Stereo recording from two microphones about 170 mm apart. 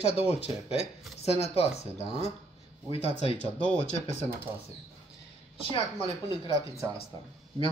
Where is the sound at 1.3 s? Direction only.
35° left (ahead or behind).